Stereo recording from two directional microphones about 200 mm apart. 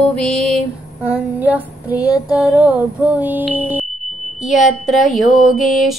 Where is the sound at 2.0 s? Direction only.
20° left (ahead or behind).